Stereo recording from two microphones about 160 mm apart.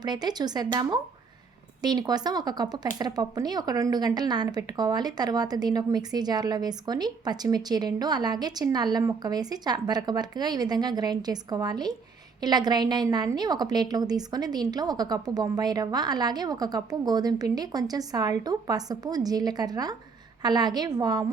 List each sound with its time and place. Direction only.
0.0 s a woman's voice: 25° right (ahead or behind)